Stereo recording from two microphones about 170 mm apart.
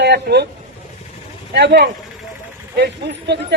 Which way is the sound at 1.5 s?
80° right.